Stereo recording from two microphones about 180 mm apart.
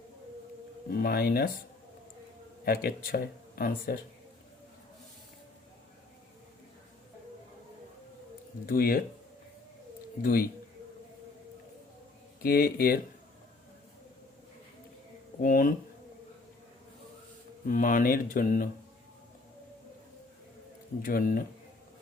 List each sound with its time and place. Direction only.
0.9 s speech: 55° left (ahead or behind)
2.6 s speech: 55° left (ahead or behind)
8.6 s speech: 55° left (ahead or behind)
10.2 s speech: 55° left (ahead or behind)
12.4 s speech: 55° left (ahead or behind)
15.4 s speech: 50° left (ahead or behind)
17.7 s speech: 50° left (ahead or behind)
21.0 s speech: 50° left (ahead or behind)